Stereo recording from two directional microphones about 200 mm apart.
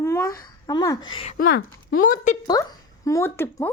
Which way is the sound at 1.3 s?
45° left (ahead or behind).